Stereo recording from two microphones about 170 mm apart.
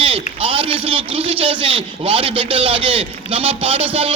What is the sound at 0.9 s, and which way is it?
Speech, 30° right (ahead or behind).